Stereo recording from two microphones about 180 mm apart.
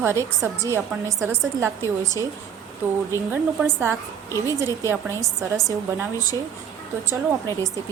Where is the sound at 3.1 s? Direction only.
10° right (ahead or behind).